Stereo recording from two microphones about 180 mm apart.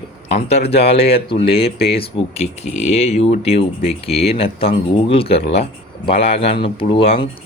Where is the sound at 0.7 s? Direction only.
35° left (ahead or behind).